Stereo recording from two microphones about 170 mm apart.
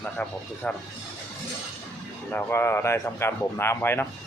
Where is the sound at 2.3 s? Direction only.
15° left (ahead or behind).